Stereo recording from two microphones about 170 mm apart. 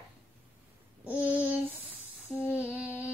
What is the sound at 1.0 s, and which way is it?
Child singing, 10° right (ahead or behind).